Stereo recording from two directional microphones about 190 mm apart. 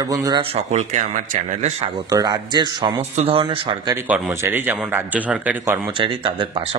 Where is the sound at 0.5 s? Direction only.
40° right (ahead or behind).